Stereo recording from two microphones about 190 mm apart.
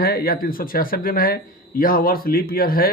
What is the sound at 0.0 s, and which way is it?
Speech, 50° left (ahead or behind).